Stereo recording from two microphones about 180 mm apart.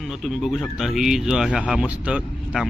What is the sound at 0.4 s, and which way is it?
A man's voice, centre (ahead or behind).